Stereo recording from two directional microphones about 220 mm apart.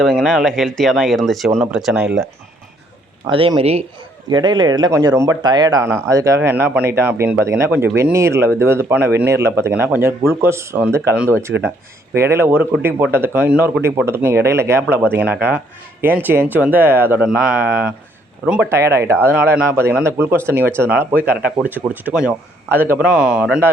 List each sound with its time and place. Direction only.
0.0 s speech: centre (ahead or behind)
3.2 s speech: 20° right (ahead or behind)
11.5 s speech: 55° right (ahead or behind)
12.1 s speech: 10° right (ahead or behind)